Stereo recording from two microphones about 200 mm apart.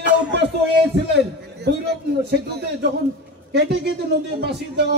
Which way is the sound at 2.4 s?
55° right (ahead or behind).